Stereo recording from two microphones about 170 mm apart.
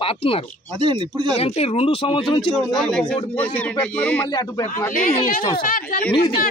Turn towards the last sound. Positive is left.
turn(degrees=30)  # may be behind; listen again after turning